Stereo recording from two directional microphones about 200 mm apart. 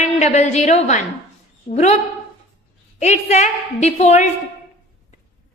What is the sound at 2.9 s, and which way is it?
A woman's voice, 35° left (ahead or behind).